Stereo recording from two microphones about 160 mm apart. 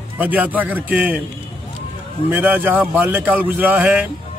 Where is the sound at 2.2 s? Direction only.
10° right (ahead or behind).